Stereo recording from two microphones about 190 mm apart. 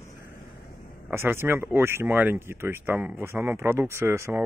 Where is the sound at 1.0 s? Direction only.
10° right (ahead or behind).